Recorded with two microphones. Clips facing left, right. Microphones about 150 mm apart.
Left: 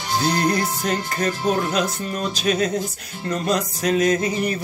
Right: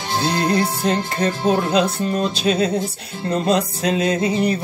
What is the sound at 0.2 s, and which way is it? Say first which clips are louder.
Music: right 2 dB; 25° right (ahead or behind).